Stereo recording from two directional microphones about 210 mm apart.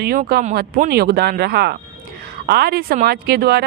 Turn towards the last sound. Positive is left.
turn(degrees=-50)  # may be behind; listen again after turning